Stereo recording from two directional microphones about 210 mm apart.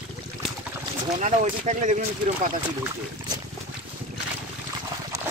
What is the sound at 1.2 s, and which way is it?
Speech, 35° right (ahead or behind).